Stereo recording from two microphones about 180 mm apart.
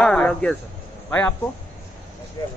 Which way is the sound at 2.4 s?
20° left (ahead or behind).